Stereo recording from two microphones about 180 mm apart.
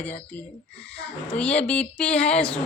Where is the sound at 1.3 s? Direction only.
5° left (ahead or behind).